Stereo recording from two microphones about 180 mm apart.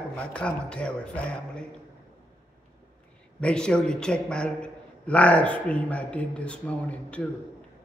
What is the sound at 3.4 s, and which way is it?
A man's voice, 5° left (ahead or behind).